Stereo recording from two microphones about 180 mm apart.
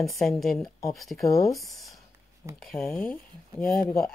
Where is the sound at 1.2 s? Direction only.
15° left (ahead or behind).